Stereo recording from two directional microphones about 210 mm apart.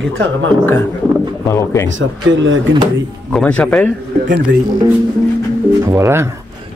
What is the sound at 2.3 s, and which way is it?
Speech, 60° right (ahead or behind).